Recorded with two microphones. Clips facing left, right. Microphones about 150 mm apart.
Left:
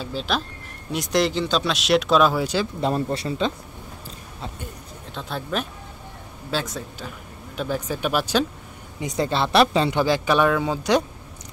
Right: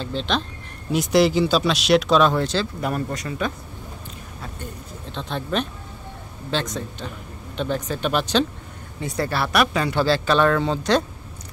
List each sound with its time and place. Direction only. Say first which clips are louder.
0.0 s speech: right 1 dB; 5° left (ahead or behind)
2.8 s speech: left 3 dB; 30° left (ahead or behind)
5.1 s speech: right 2 dB; 5° left (ahead or behind)
9.0 s speech: left 1 dB; 20° left (ahead or behind)